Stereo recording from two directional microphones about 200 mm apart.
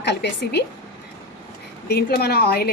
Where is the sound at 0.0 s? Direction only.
55° left (ahead or behind).